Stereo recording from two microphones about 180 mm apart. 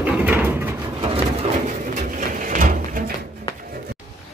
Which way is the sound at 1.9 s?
50° right (ahead or behind).